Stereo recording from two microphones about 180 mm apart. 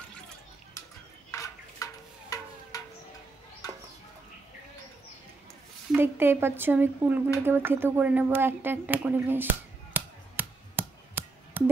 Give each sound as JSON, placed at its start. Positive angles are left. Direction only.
{"t": 1.3, "sound": "a sound", "side_deg": 15}
{"t": 5.9, "sound": "speech", "side_deg": -10}
{"t": 11.6, "sound": "busy signal", "side_deg": -10}